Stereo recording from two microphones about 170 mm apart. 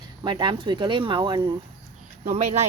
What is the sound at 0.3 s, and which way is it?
Speech, 25° right (ahead or behind).